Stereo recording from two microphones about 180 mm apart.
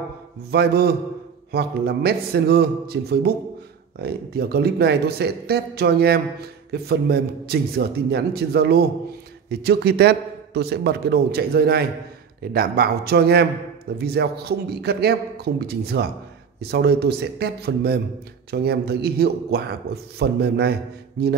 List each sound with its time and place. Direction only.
0.5 s a man's voice: 65° right (ahead or behind)